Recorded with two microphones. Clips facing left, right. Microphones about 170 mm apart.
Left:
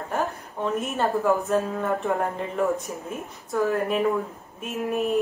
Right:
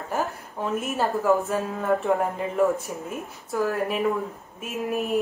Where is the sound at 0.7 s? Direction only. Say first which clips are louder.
Even; centre (ahead or behind).